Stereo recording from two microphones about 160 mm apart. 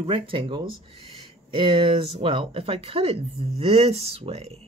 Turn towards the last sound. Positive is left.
turn(degrees=-40)  # may be behind; listen again after turning